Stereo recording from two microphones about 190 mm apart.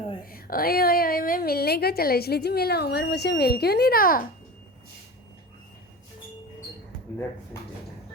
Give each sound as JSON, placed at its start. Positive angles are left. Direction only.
{"t": 0.3, "sound": "a woman's voice", "side_deg": 50}